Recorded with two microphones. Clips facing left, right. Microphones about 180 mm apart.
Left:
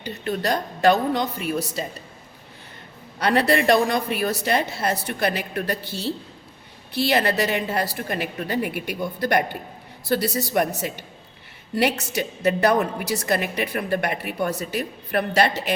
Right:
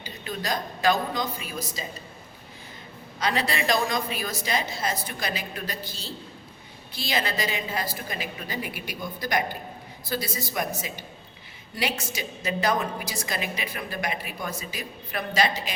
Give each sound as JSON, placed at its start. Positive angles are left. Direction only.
{"t": 0.0, "sound": "a woman's voice", "side_deg": 65}
{"t": 3.2, "sound": "a woman's voice", "side_deg": 65}